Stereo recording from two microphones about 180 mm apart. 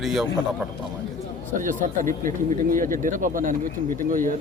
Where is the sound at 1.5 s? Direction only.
45° right (ahead or behind).